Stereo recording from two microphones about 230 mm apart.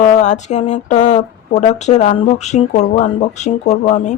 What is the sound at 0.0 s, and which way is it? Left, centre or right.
A woman's voice, left.